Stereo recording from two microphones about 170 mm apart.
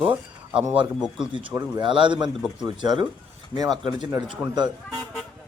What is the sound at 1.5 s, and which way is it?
Speech, 15° right (ahead or behind).